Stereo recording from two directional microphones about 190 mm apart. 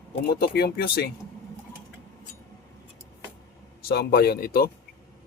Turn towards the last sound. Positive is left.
turn(degrees=50)  # may be behind; listen again after turning